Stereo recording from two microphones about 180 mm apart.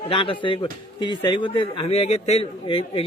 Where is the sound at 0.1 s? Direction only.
30° left (ahead or behind).